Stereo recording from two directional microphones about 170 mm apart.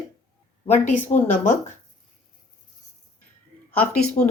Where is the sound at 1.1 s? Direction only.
45° left (ahead or behind).